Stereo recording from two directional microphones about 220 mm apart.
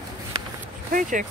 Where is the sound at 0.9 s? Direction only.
35° right (ahead or behind).